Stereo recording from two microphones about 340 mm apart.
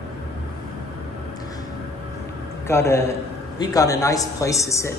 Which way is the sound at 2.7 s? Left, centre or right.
Centre.